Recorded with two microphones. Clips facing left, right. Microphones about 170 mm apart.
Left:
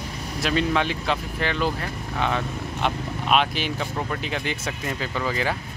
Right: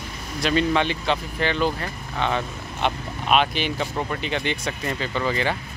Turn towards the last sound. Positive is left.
turn(degrees=5)  # may be behind; listen again after turning